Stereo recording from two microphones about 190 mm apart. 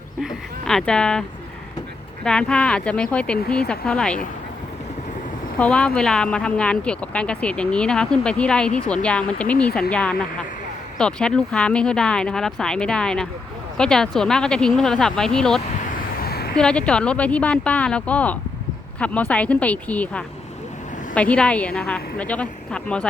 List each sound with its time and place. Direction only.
0.2 s speech: centre (ahead or behind)
2.2 s speech: 5° left (ahead or behind)
5.5 s speech: 5° left (ahead or behind)
16.0 s a sound: 55° left (ahead or behind)
16.6 s a woman's voice: 5° left (ahead or behind)